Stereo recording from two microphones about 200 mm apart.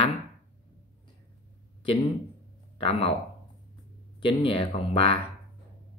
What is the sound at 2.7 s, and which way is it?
Speech, 30° left (ahead or behind).